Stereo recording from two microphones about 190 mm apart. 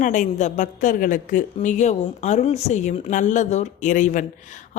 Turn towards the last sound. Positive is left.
turn(degrees=40)  # may be behind; listen again after turning